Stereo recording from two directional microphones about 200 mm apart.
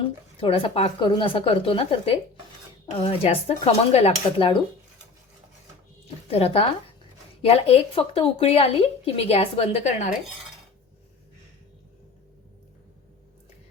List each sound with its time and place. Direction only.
0.0 s speech: 30° left (ahead or behind)
6.2 s a woman's voice: 30° left (ahead or behind)